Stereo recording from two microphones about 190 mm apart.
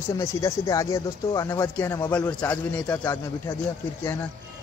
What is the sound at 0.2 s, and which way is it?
Speech, 15° left (ahead or behind).